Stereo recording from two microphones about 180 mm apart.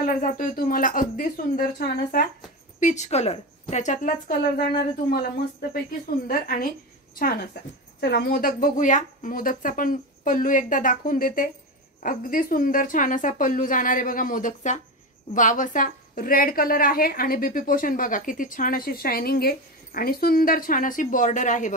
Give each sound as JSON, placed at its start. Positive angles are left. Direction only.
{"t": 0.0, "sound": "a woman's voice", "side_deg": 50}
{"t": 2.8, "sound": "a woman's voice", "side_deg": 40}
{"t": 8.0, "sound": "a woman's voice", "side_deg": 65}